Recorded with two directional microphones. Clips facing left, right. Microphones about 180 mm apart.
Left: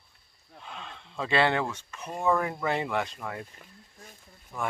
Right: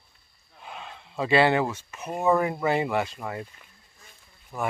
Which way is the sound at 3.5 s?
40° left (ahead or behind).